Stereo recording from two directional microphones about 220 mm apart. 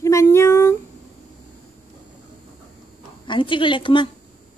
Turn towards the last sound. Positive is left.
turn(degrees=20)  # may be behind; listen again after turning